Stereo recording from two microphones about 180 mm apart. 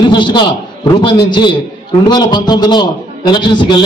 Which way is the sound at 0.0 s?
25° left (ahead or behind).